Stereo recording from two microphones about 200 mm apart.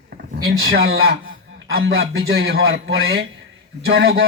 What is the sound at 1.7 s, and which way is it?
Speech, 50° right (ahead or behind).